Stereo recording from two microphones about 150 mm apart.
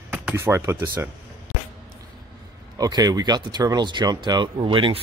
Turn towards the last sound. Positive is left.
turn(degrees=-35)  # may be behind; listen again after turning